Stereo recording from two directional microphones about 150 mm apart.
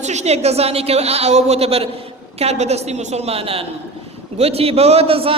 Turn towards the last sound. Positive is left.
turn(degrees=-40)  # may be behind; listen again after turning